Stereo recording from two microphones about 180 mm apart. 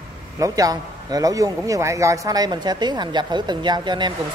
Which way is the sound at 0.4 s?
20° right (ahead or behind).